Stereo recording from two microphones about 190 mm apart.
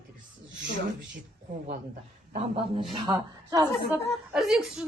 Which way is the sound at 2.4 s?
25° right (ahead or behind).